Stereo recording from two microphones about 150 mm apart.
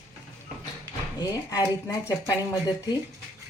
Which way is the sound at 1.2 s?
20° left (ahead or behind).